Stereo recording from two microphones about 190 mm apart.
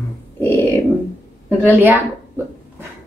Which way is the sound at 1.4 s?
10° right (ahead or behind).